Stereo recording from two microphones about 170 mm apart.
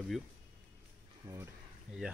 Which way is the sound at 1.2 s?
15° right (ahead or behind).